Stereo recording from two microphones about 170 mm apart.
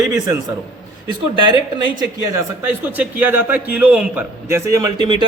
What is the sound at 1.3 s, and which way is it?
Speech, 30° right (ahead or behind).